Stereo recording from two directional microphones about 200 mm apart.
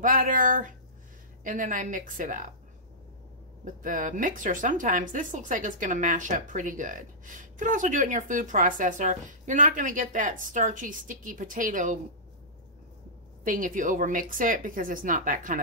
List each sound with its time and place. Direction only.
0.0 s speech: 45° right (ahead or behind)
3.6 s speech: 40° right (ahead or behind)
13.4 s speech: 40° right (ahead or behind)